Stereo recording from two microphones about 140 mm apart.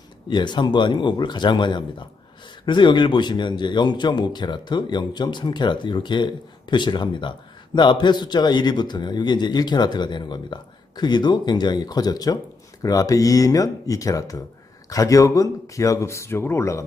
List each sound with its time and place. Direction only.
0.3 s speech: 35° left (ahead or behind)